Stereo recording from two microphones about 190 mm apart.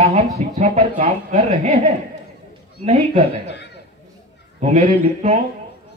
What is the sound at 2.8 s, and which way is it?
Speech, 35° right (ahead or behind).